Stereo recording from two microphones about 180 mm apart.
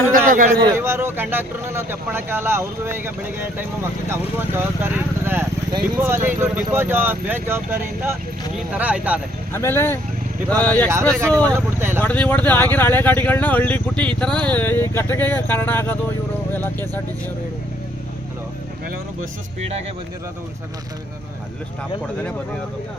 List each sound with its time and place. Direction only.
0.3 s a man's voice: 50° right (ahead or behind)
0.8 s speech: 15° right (ahead or behind)
9.5 s speech: 15° left (ahead or behind)
11.5 s speech: 15° right (ahead or behind)
12.0 s speech: 10° left (ahead or behind)